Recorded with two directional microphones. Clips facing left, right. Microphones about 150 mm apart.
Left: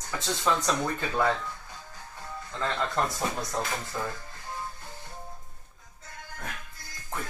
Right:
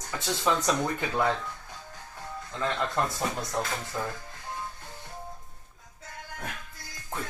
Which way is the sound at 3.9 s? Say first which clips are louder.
Right 1 dB; centre (ahead or behind).